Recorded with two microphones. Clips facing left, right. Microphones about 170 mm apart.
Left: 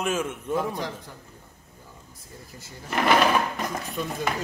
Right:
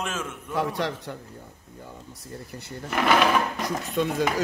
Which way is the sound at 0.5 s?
75° right (ahead or behind).